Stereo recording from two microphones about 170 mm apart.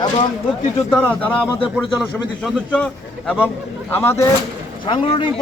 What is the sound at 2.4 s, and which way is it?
Speech, 5° left (ahead or behind).